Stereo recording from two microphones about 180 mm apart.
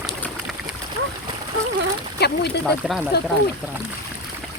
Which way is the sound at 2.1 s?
65° left (ahead or behind).